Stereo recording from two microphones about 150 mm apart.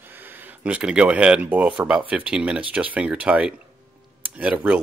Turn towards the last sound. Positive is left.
turn(degrees=-10)  # may be behind; listen again after turning